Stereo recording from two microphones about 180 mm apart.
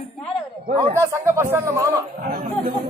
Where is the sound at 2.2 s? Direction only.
50° right (ahead or behind).